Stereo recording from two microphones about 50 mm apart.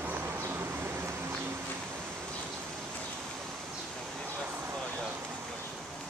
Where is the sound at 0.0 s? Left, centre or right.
Right.